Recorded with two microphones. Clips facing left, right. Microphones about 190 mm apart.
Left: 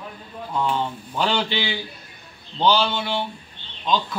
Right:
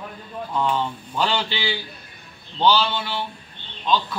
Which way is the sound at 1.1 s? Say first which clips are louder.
Left 1 dB; 15° left (ahead or behind).